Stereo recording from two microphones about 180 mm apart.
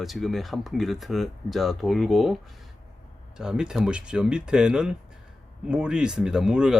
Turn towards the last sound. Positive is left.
turn(degrees=-5)  # may be behind; listen again after turning